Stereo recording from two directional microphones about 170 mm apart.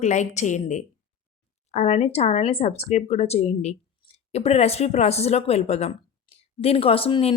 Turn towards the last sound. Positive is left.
turn(degrees=35)  # may be behind; listen again after turning